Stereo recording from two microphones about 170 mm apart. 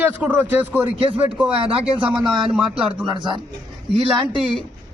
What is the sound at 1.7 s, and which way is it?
Speech, 35° right (ahead or behind).